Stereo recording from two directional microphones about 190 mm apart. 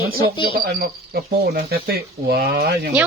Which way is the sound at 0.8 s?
55° right (ahead or behind).